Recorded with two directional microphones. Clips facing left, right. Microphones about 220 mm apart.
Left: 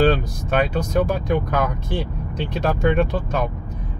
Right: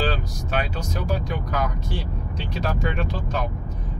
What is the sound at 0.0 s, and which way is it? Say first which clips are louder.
Speech: left 8 dB; 55° left (ahead or behind).